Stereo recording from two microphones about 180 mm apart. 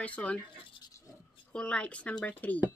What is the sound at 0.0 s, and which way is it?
Speech, 5° left (ahead or behind).